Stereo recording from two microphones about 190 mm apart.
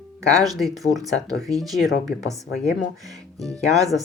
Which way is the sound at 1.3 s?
20° right (ahead or behind).